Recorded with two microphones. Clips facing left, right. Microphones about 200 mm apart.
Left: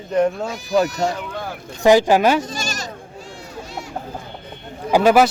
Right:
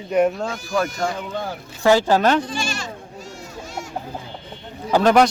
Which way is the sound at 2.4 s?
40° left (ahead or behind).